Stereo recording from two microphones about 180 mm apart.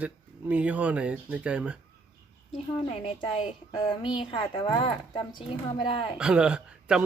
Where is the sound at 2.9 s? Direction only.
35° left (ahead or behind).